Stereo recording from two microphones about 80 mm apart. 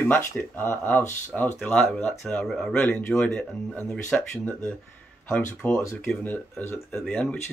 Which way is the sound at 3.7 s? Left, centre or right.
Centre.